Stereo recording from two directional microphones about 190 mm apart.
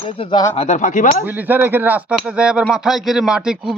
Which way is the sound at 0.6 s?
35° left (ahead or behind).